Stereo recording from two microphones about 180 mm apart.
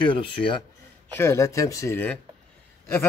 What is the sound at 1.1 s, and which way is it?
Speech, 15° left (ahead or behind).